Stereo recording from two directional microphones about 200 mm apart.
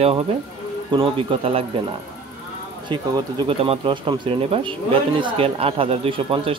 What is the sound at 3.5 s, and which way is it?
Speech, 30° right (ahead or behind).